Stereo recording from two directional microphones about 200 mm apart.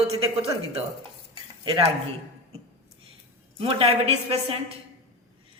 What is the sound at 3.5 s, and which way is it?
A man's voice, 30° right (ahead or behind).